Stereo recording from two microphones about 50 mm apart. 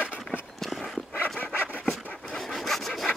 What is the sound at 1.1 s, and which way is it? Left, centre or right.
Dog, left.